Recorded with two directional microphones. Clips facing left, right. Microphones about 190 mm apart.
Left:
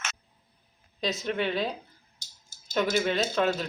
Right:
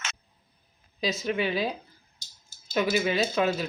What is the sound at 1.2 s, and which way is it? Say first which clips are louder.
Speech: right 1 dB; 5° right (ahead or behind).